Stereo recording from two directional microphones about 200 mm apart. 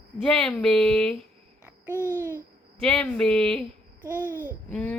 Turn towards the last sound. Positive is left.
turn(degrees=10)  # may be behind; listen again after turning